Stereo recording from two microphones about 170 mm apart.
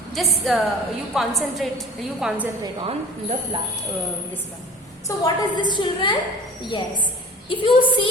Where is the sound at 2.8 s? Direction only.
35° right (ahead or behind).